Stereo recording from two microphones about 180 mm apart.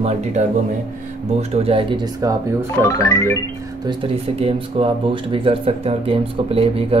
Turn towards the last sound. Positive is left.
turn(degrees=-30)  # may be behind; listen again after turning